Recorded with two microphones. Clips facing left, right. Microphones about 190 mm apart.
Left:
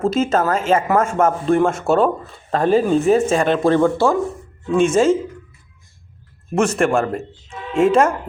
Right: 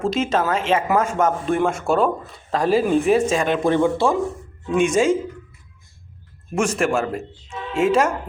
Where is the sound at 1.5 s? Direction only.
5° right (ahead or behind).